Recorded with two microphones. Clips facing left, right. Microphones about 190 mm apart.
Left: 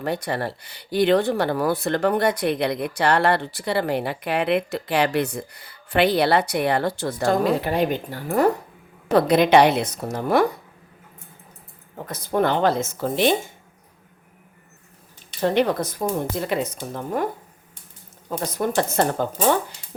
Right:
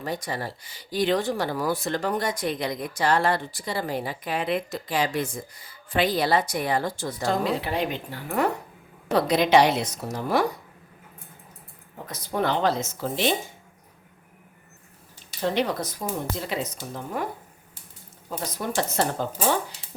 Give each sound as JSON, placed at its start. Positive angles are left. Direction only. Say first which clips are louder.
{"t": 0.0, "sound": "speech", "louder": "left 5 dB", "side_deg": 65}
{"t": 9.1, "sound": "speech", "louder": "left 4 dB", "side_deg": 55}
{"t": 12.0, "sound": "speech", "louder": "left 5 dB", "side_deg": 50}
{"t": 15.4, "sound": "speech", "louder": "left 5 dB", "side_deg": 55}
{"t": 18.3, "sound": "speech", "louder": "left 6 dB", "side_deg": 55}